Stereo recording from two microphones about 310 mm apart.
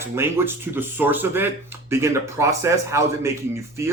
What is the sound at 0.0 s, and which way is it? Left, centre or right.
Speech, centre.